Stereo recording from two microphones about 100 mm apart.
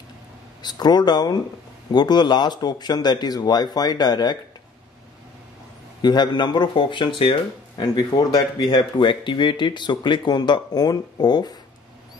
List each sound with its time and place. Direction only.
0.6 s speech: 45° left (ahead or behind)
6.0 s speech: 45° left (ahead or behind)
7.8 s speech: 40° left (ahead or behind)